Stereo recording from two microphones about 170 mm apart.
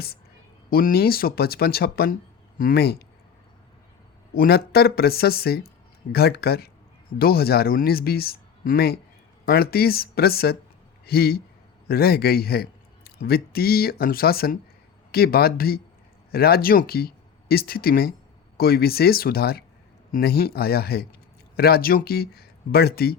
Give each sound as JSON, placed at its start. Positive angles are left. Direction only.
{"t": 0.7, "sound": "speech", "side_deg": 60}
{"t": 4.4, "sound": "speech", "side_deg": 65}